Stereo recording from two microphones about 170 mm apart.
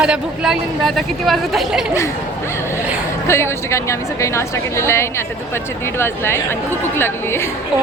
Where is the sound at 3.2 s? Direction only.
15° left (ahead or behind).